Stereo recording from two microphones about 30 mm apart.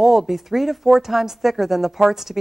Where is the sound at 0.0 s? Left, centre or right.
Centre.